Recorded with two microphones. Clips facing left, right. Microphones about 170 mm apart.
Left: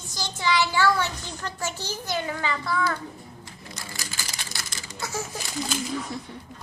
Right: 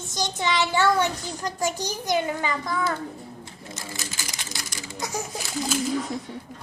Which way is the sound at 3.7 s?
20° right (ahead or behind).